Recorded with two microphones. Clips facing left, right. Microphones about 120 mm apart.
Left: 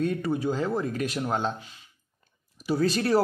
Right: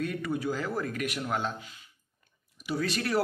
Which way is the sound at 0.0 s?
30° left (ahead or behind).